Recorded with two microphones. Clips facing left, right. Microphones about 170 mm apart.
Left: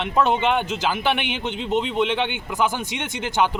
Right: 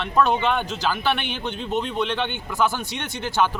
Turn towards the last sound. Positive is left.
turn(degrees=20)  # may be behind; listen again after turning